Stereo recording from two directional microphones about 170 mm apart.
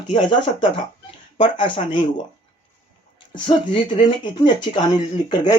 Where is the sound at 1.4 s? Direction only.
30° left (ahead or behind).